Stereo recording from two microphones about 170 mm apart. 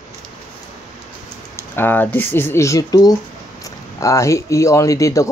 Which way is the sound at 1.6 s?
10° left (ahead or behind).